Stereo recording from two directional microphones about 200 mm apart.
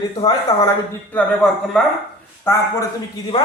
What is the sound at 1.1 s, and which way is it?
Speech, 5° left (ahead or behind).